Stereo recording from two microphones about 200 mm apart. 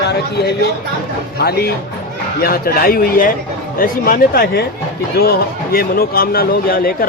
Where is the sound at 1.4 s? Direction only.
50° left (ahead or behind).